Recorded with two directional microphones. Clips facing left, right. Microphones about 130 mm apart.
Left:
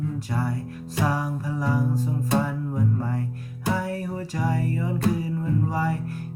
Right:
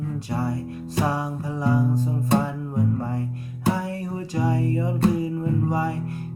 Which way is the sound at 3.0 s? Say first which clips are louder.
Right 1 dB; 20° right (ahead or behind).